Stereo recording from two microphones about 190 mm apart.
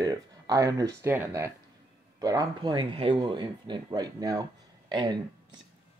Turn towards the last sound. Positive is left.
turn(degrees=-25)  # may be behind; listen again after turning